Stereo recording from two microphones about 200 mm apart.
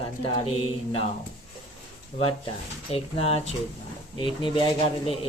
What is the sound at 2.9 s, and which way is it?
Speech, 30° left (ahead or behind).